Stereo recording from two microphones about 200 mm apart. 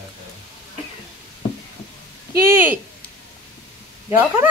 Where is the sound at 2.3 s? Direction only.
10° right (ahead or behind).